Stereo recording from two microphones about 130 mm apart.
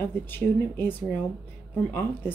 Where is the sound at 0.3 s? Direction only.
15° left (ahead or behind).